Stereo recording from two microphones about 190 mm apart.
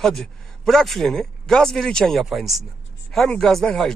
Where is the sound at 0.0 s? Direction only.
Centre (ahead or behind).